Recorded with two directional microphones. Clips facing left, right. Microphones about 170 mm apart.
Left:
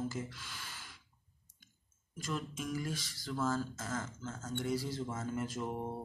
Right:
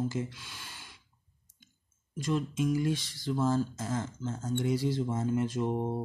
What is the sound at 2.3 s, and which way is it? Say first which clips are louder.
Speech: right 9 dB; 25° right (ahead or behind).